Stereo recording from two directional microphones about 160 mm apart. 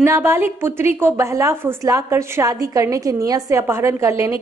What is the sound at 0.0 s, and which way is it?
A woman's voice, 15° right (ahead or behind).